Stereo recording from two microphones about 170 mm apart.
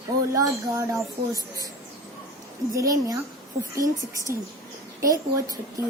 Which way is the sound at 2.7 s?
20° right (ahead or behind).